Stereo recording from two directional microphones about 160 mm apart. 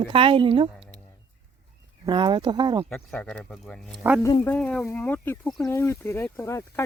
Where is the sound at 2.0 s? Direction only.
30° right (ahead or behind).